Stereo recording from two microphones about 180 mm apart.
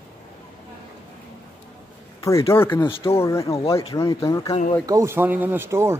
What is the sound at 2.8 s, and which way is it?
Speech, 30° left (ahead or behind).